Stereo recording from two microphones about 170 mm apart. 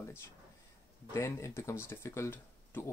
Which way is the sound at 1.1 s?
15° left (ahead or behind).